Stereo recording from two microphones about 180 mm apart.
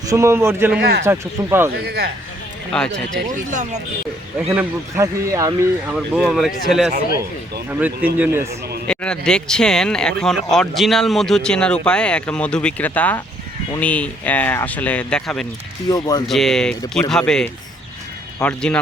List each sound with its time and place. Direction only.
0.1 s a man's voice: 15° right (ahead or behind)
0.8 s speech: 65° right (ahead or behind)
1.0 s a man's voice: 15° right (ahead or behind)
1.7 s speech: 65° right (ahead or behind)
2.7 s speech: 5° left (ahead or behind)
3.5 s speech: 40° right (ahead or behind)
4.4 s speech: 5° right (ahead or behind)
4.9 s a man's voice: 15° right (ahead or behind)
5.9 s a man's voice: centre (ahead or behind)
8.9 s speech: 5° left (ahead or behind)
15.9 s speech: 20° left (ahead or behind)
16.2 s speech: centre (ahead or behind)